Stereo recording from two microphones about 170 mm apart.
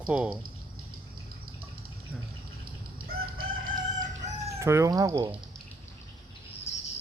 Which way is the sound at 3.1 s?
60° right (ahead or behind).